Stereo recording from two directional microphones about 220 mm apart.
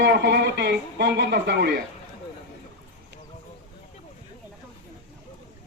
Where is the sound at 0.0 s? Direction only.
50° right (ahead or behind).